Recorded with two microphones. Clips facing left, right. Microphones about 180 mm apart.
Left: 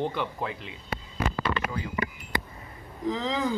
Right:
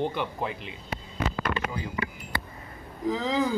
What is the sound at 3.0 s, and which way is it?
Speech, 5° right (ahead or behind).